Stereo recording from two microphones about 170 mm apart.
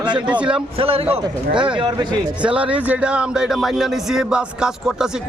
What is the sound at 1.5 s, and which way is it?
Speech, 5° right (ahead or behind).